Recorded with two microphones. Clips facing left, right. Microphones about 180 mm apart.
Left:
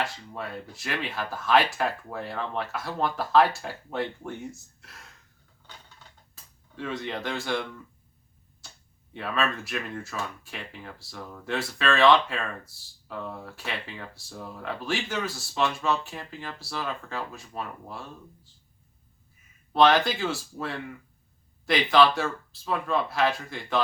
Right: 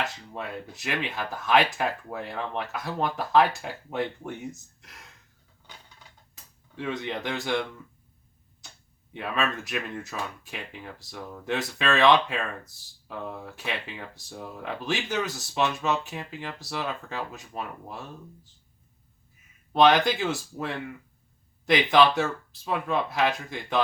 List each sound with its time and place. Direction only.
0.0 s speech: 20° right (ahead or behind)
6.3 s speech: 15° right (ahead or behind)
9.1 s speech: 15° right (ahead or behind)
19.7 s speech: 15° right (ahead or behind)